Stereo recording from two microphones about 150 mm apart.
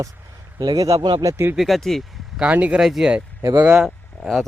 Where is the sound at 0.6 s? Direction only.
25° right (ahead or behind).